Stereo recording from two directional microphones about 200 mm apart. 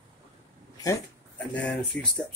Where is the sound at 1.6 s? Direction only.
5° left (ahead or behind).